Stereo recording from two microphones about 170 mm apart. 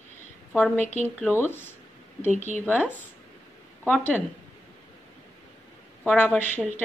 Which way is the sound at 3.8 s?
5° left (ahead or behind).